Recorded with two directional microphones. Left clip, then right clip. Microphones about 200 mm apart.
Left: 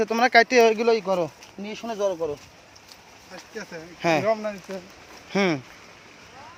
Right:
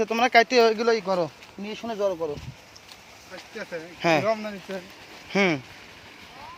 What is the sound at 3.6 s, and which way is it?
Speech, 55° left (ahead or behind).